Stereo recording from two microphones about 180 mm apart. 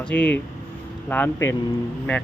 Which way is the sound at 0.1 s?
5° left (ahead or behind).